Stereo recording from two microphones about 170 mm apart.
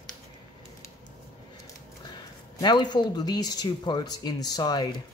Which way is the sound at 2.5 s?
25° left (ahead or behind).